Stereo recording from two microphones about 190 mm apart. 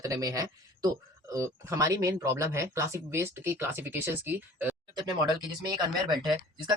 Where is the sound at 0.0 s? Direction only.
20° right (ahead or behind).